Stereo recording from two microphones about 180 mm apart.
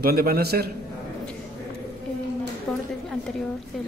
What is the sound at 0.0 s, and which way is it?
Speech, 55° right (ahead or behind).